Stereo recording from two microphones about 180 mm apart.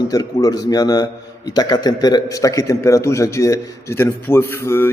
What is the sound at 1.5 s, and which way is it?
A man's voice, 25° left (ahead or behind).